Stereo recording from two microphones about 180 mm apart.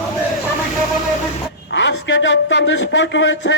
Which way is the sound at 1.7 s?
80° left.